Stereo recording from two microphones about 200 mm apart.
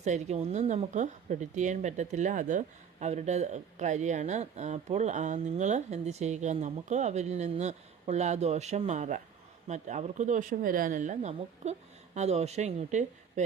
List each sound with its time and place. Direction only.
0.0 s speech: 35° right (ahead or behind)